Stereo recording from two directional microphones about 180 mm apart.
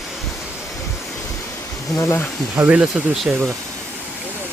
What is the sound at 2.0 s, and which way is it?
Speech, 15° left (ahead or behind).